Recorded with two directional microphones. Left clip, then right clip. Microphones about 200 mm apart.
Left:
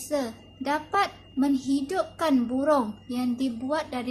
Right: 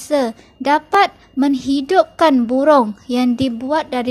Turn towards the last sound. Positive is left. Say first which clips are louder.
# right 10 dB
turn(degrees=-40)  # may be behind; listen again after turning